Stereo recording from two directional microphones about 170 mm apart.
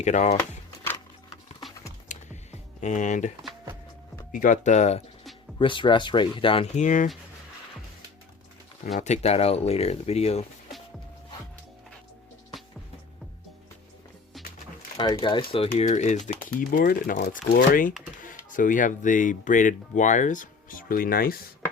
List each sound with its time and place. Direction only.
0.0 s speech: 40° left (ahead or behind)
2.0 s computer keyboard: 45° left (ahead or behind)
4.3 s speech: 50° left (ahead or behind)
5.5 s speech: 30° left (ahead or behind)
6.7 s speech: 50° left (ahead or behind)
9.0 s speech: 40° left (ahead or behind)
14.3 s music: centre (ahead or behind)
15.2 s speech: 30° left (ahead or behind)
15.7 s speech: 45° left (ahead or behind); by 17.6 s 65° left (ahead or behind)
17.7 s speech: 55° left (ahead or behind)